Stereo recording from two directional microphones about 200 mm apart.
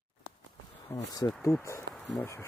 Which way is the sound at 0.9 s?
20° left (ahead or behind).